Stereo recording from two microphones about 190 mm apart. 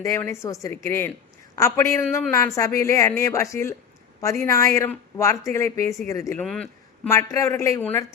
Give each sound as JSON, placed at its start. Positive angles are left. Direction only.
{"t": 0.0, "sound": "a woman's voice", "side_deg": 15}
{"t": 6.4, "sound": "speech", "side_deg": 5}
{"t": 7.1, "sound": "a woman's voice", "side_deg": 15}